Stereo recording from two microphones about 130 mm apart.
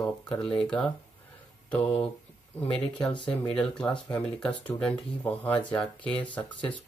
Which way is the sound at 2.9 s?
35° left (ahead or behind).